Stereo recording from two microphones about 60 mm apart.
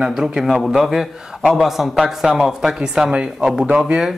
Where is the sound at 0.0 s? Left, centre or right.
Centre.